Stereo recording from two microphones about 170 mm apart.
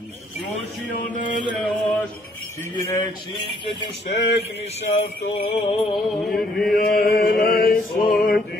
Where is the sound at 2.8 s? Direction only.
20° left (ahead or behind).